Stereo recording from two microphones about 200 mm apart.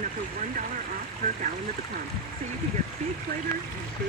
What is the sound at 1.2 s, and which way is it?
Speech, 45° right (ahead or behind).